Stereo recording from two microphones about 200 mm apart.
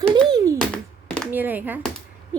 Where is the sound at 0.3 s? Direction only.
15° right (ahead or behind).